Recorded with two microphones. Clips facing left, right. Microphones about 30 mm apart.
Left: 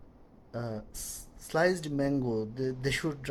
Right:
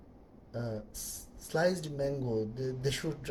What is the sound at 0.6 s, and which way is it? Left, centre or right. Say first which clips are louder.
Speech: left 1 dB; left.